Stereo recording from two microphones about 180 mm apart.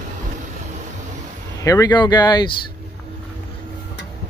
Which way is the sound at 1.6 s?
20° left (ahead or behind).